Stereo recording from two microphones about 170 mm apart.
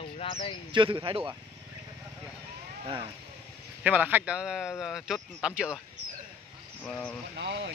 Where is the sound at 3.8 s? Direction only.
10° right (ahead or behind).